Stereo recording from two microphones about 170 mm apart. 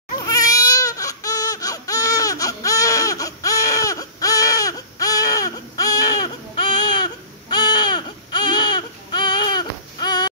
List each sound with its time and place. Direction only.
0.2 s baby cry: 20° left (ahead or behind)